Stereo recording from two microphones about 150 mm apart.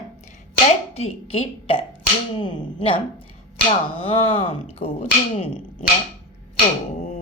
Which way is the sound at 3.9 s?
40° left (ahead or behind).